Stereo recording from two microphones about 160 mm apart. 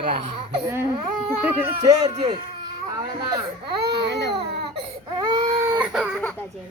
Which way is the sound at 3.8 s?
90° right.